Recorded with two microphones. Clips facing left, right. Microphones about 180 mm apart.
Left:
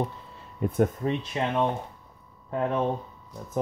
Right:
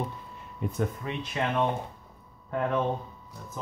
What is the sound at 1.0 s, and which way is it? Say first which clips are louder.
Speech: left 8 dB; 35° left (ahead or behind).